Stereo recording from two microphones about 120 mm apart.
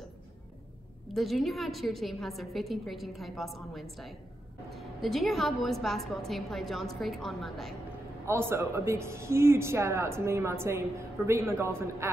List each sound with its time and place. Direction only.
1.1 s a woman's voice: centre (ahead or behind)
8.3 s speech: 20° right (ahead or behind)